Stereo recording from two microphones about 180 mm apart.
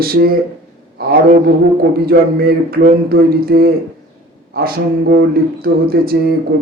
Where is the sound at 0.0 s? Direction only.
55° right (ahead or behind).